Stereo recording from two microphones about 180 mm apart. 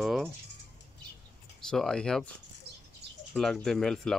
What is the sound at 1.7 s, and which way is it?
Speech, 5° left (ahead or behind).